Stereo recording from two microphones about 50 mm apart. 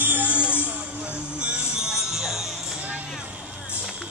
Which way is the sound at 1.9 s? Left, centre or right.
Centre.